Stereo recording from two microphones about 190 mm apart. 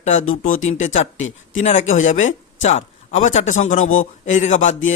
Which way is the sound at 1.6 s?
35° left (ahead or behind).